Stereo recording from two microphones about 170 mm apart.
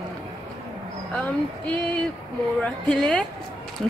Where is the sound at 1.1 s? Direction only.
5° left (ahead or behind).